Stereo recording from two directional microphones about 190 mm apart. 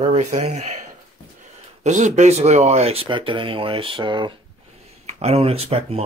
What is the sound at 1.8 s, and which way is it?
Speech, 40° right (ahead or behind).